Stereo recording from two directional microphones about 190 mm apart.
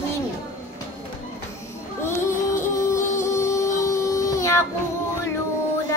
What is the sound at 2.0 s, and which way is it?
Music, 15° left (ahead or behind).